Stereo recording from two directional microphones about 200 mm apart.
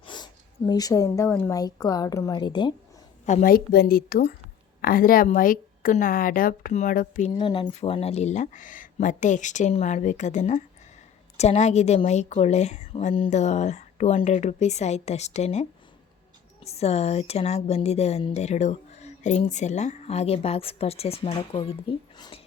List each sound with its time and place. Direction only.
0.0 s a sound: 20° left (ahead or behind)
0.7 s a woman's voice: 20° left (ahead or behind)
3.2 s speech: 40° left (ahead or behind)
7.3 s speech: 25° left (ahead or behind)
16.6 s speech: 30° left (ahead or behind)